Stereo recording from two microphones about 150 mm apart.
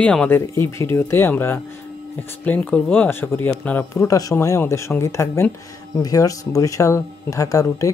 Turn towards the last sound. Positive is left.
turn(degrees=20)  # may be behind; listen again after turning